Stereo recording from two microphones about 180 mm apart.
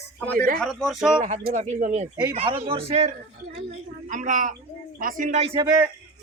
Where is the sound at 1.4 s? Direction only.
45° right (ahead or behind).